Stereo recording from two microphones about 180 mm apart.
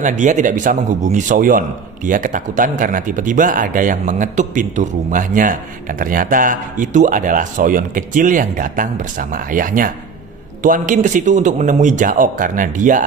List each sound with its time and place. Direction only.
0.0 s speech: 45° right (ahead or behind)